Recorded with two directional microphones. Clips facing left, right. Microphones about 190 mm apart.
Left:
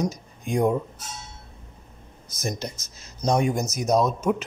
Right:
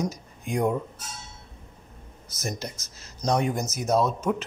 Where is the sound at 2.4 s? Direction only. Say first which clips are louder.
Left 3 dB; 20° left (ahead or behind).